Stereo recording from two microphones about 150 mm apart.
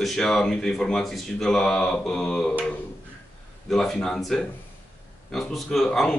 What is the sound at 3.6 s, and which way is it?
Speech, 5° left (ahead or behind).